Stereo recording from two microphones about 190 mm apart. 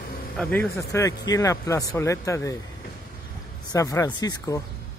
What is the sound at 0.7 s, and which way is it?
Speech, 15° left (ahead or behind).